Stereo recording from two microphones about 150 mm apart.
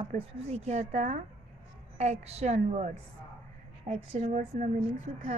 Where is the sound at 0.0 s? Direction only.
45° right (ahead or behind).